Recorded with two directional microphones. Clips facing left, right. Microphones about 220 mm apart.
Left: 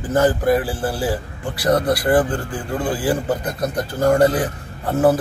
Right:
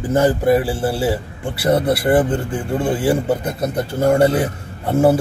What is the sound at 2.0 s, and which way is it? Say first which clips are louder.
Speech: right 2 dB; 25° right (ahead or behind).